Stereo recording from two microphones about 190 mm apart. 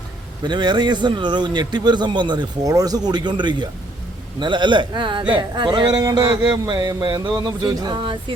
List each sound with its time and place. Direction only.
0.4 s a man's voice: 25° right (ahead or behind)